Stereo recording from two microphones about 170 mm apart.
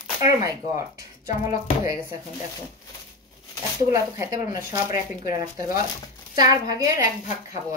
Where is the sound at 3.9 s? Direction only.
20° right (ahead or behind).